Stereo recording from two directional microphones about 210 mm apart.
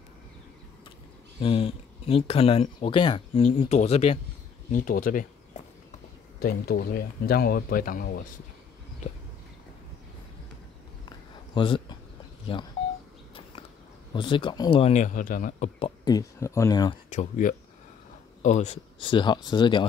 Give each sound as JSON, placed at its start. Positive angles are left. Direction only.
{"t": 1.4, "sound": "speech", "side_deg": 25}
{"t": 4.6, "sound": "speech", "side_deg": 40}
{"t": 11.1, "sound": "a sound", "side_deg": 25}
{"t": 12.5, "sound": "speech", "side_deg": 25}
{"t": 14.1, "sound": "speech", "side_deg": 25}
{"t": 15.8, "sound": "speech", "side_deg": 20}
{"t": 17.1, "sound": "speech", "side_deg": 35}